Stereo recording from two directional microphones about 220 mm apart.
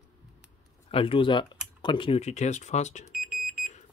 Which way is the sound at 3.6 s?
30° left (ahead or behind).